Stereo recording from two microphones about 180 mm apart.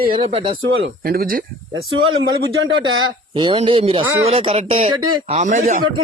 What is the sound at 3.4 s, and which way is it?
Speech, 25° right (ahead or behind).